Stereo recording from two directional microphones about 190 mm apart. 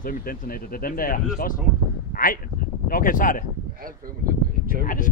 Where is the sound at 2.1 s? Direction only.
50° left (ahead or behind).